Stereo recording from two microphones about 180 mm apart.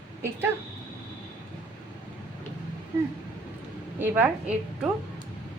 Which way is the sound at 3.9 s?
10° right (ahead or behind).